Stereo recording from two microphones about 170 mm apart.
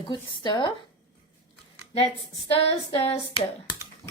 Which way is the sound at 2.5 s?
35° left (ahead or behind).